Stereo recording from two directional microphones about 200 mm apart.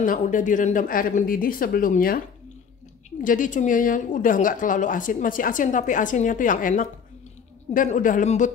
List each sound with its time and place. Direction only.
0.0 s speech: 40° left (ahead or behind)
3.3 s a woman's voice: 40° left (ahead or behind)